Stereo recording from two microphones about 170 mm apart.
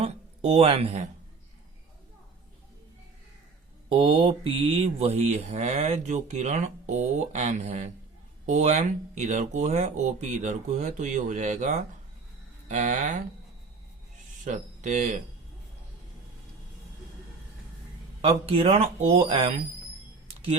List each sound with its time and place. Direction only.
0.0 s speech: 35° right (ahead or behind)
3.8 s speech: 35° right (ahead or behind); by 13.2 s 50° right (ahead or behind)
14.4 s speech: 45° right (ahead or behind)
18.2 s speech: 35° right (ahead or behind)